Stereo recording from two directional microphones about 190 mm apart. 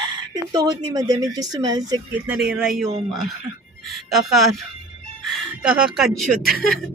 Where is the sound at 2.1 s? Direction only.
5° right (ahead or behind).